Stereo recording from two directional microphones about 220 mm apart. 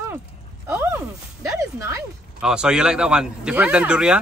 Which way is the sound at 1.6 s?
10° right (ahead or behind).